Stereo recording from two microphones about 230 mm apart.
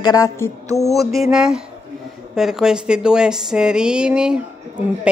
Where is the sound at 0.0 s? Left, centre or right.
Centre.